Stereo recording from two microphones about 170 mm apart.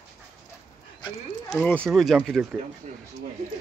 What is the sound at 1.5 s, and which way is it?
Speech, 5° left (ahead or behind).